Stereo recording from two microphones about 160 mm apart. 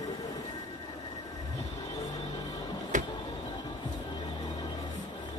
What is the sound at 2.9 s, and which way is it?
Music, 50° right (ahead or behind).